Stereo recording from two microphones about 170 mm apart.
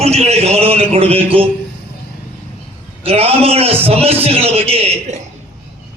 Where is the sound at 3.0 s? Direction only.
35° right (ahead or behind).